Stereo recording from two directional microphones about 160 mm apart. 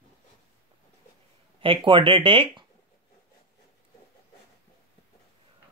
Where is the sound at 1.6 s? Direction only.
35° right (ahead or behind).